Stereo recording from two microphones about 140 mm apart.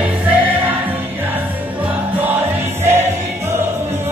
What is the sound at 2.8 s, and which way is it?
Music, 15° right (ahead or behind).